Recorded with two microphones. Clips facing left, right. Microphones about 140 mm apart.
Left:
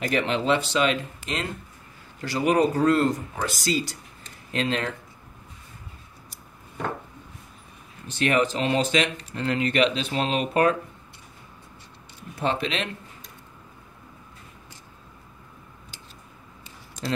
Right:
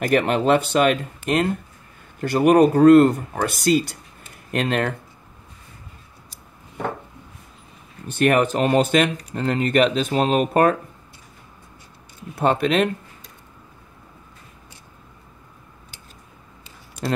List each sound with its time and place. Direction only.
0.0 s speech: 55° right (ahead or behind)
8.1 s speech: 55° right (ahead or behind)
9.1 s speech: 40° right (ahead or behind)
12.4 s speech: 50° right (ahead or behind)